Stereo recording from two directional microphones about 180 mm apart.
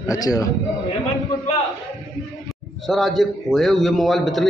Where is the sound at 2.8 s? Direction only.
Centre (ahead or behind).